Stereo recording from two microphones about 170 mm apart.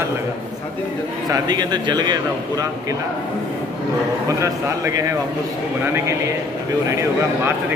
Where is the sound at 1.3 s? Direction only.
25° right (ahead or behind).